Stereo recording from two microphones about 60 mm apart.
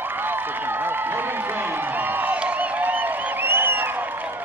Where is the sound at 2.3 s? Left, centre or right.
Right.